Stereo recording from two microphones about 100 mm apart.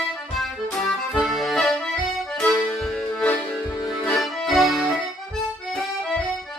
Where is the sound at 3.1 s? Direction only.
15° left (ahead or behind).